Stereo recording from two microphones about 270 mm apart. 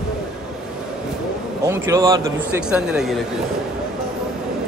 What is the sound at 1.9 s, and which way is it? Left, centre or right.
A man's voice, centre.